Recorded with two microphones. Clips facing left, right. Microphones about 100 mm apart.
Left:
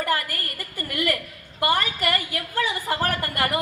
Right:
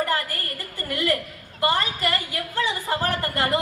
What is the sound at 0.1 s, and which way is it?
A woman's voice, 25° right (ahead or behind).